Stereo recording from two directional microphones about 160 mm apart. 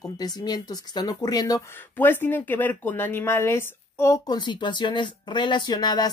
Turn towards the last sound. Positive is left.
turn(degrees=25)  # may be behind; listen again after turning